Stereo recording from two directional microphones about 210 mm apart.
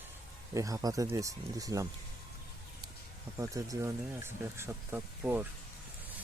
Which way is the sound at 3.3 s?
15° right (ahead or behind).